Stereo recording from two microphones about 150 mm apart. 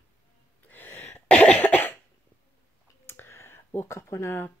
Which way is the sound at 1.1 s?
5° left (ahead or behind).